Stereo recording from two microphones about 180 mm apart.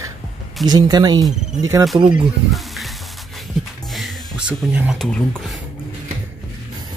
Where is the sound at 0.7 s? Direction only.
20° right (ahead or behind).